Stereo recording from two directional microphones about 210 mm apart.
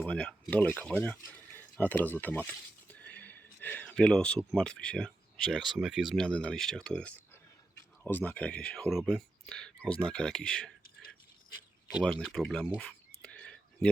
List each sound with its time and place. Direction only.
0.0 s speech: 5° left (ahead or behind)
11.9 s speech: centre (ahead or behind)
13.2 s whispering: 5° left (ahead or behind)